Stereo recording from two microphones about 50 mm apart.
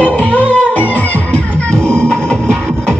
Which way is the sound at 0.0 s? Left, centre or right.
Left.